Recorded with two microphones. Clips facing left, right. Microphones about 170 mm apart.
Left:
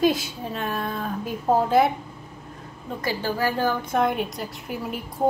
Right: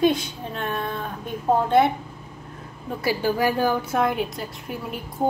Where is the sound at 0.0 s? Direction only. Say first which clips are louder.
Right 1 dB; 5° left (ahead or behind).